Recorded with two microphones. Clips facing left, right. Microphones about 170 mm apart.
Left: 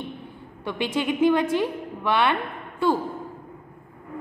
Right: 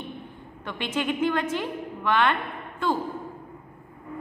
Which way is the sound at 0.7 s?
10° left (ahead or behind).